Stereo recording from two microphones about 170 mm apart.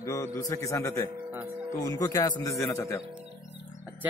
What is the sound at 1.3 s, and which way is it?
Speech, 10° right (ahead or behind).